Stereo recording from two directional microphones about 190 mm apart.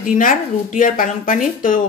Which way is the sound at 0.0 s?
45° left (ahead or behind).